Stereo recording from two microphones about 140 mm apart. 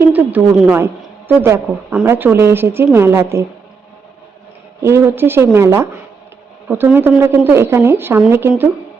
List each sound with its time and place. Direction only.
0.1 s a woman's voice: 10° right (ahead or behind)
4.8 s a woman's voice: 20° right (ahead or behind)